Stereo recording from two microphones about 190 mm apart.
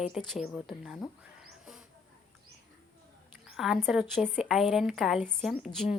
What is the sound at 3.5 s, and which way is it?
A woman's voice, centre (ahead or behind).